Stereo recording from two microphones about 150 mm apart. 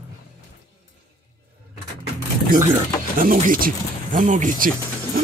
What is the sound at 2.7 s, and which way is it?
Speech, 60° right (ahead or behind).